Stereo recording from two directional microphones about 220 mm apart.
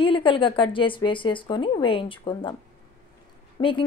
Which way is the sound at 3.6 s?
25° left (ahead or behind).